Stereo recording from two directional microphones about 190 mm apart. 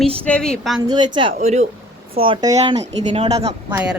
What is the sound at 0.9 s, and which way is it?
Speech, 25° right (ahead or behind).